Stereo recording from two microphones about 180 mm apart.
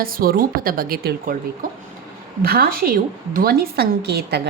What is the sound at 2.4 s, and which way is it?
A woman's voice, 55° right (ahead or behind).